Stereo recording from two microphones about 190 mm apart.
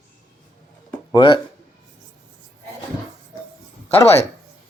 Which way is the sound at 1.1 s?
25° left (ahead or behind).